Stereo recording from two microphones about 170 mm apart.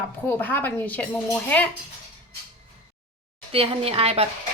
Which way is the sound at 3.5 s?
35° right (ahead or behind).